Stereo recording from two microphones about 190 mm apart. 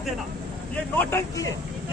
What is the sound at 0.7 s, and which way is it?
Speech, 10° left (ahead or behind).